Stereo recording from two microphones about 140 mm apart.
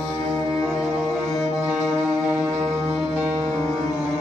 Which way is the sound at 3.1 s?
15° right (ahead or behind).